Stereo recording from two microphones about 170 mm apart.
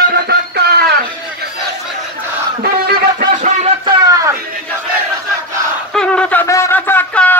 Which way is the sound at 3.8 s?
20° right (ahead or behind).